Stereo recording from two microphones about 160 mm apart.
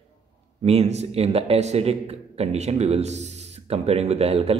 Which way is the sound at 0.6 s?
40° right (ahead or behind).